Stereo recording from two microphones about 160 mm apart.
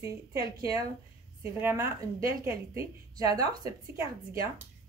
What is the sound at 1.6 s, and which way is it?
A woman's voice, 15° right (ahead or behind).